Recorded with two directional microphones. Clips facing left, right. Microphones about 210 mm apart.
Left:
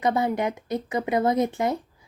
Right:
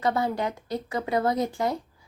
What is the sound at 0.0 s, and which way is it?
A woman's voice, 20° left (ahead or behind).